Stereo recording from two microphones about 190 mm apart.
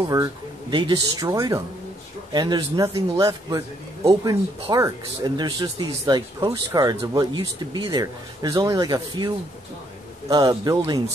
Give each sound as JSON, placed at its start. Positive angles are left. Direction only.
{"t": 0.1, "sound": "speech", "side_deg": -20}